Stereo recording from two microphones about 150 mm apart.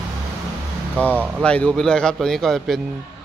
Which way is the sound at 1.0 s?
10° left (ahead or behind).